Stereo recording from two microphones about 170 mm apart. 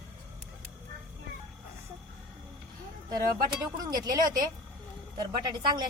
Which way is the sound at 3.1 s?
25° right (ahead or behind).